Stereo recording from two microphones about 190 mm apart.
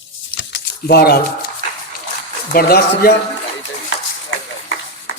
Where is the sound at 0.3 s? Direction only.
60° left (ahead or behind).